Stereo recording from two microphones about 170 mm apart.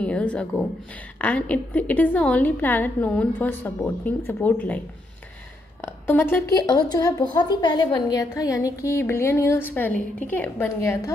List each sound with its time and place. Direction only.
0.0 s speech: 5° left (ahead or behind)